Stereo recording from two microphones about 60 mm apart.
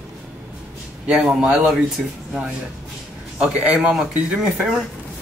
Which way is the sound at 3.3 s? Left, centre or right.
Centre.